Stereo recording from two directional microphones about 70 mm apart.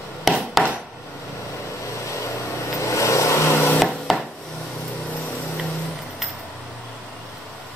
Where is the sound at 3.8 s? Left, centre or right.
Centre.